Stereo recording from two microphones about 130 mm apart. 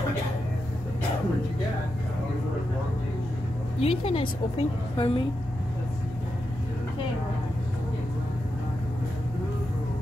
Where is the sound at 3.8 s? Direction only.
45° left (ahead or behind).